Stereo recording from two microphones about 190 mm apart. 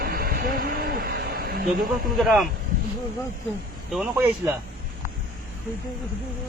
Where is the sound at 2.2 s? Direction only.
Centre (ahead or behind).